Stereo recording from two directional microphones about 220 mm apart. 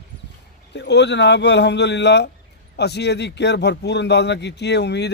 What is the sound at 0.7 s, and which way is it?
A man's voice, 50° left (ahead or behind).